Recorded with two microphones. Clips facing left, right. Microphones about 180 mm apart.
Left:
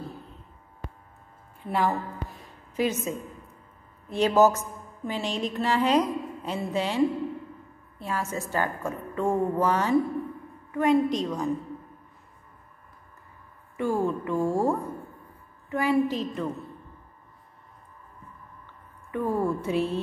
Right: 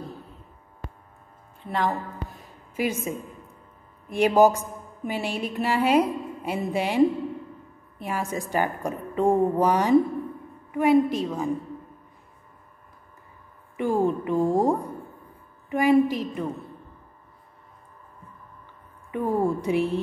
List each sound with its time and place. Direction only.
1.6 s a woman's voice: 5° left (ahead or behind); by 3.2 s 10° right (ahead or behind)
4.4 s a woman's voice: 15° right (ahead or behind)
13.7 s a woman's voice: 15° right (ahead or behind)
19.1 s a woman's voice: 15° right (ahead or behind)